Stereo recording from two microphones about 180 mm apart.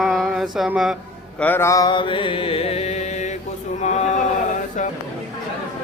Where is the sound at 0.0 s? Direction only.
Centre (ahead or behind).